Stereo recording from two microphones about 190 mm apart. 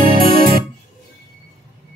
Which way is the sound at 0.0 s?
50° right (ahead or behind).